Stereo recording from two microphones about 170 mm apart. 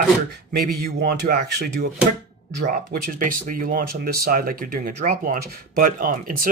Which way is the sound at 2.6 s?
55° right (ahead or behind).